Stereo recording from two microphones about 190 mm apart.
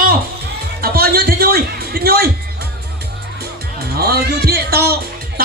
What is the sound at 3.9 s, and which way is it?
Speech, 55° right (ahead or behind).